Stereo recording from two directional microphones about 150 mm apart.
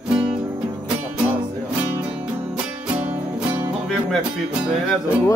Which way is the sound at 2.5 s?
10° right (ahead or behind).